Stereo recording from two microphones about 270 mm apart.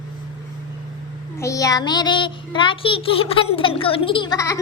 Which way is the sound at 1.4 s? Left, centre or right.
Centre.